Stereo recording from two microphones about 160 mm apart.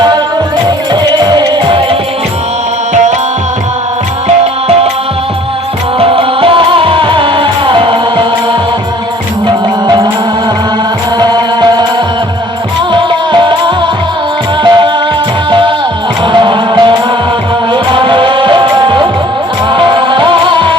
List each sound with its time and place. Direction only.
1.2 s music: 25° right (ahead or behind)
6.0 s music: 35° right (ahead or behind)
9.8 s music: 25° right (ahead or behind)
11.2 s music: 25° right (ahead or behind)
12.9 s music: 30° right (ahead or behind)